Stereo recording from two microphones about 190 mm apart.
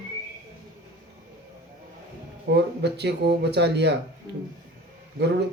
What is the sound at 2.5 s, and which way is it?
Speech, 65° right (ahead or behind).